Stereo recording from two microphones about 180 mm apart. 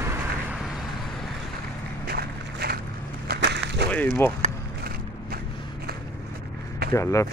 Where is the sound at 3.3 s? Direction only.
70° right (ahead or behind).